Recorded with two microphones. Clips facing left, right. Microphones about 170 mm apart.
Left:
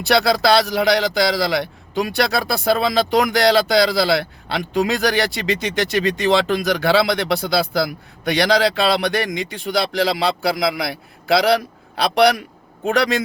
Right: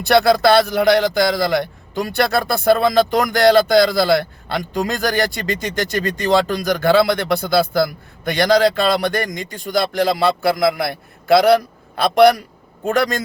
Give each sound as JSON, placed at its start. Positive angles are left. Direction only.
{"t": 0.1, "sound": "a man's voice", "side_deg": -50}
{"t": 13.0, "sound": "a man's voice", "side_deg": -40}